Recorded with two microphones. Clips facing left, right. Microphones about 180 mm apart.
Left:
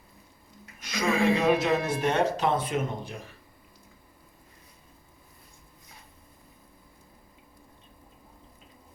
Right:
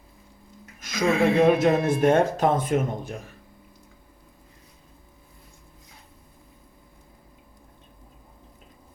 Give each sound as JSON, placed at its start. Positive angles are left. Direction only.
{"t": 0.8, "sound": "speech", "side_deg": -50}